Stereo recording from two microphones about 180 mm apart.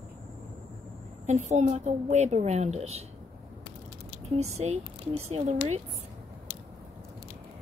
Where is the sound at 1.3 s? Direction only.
40° right (ahead or behind).